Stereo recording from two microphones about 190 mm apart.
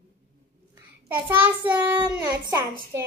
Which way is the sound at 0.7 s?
10° right (ahead or behind).